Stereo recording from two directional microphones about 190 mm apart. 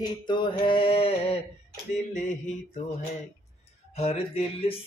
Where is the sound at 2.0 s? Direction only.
40° left (ahead or behind).